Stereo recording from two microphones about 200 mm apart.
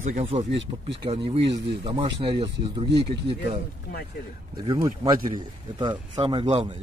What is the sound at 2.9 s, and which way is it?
Speech, 60° right (ahead or behind).